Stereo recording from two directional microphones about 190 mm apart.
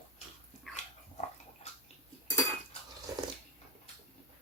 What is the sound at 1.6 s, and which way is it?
Bathtub, 35° left (ahead or behind).